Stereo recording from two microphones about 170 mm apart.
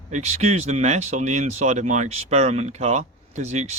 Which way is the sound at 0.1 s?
40° right (ahead or behind).